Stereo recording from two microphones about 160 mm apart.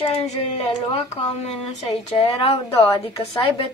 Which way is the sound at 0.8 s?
40° left (ahead or behind).